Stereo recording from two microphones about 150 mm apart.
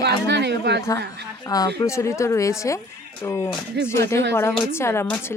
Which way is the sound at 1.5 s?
25° left (ahead or behind).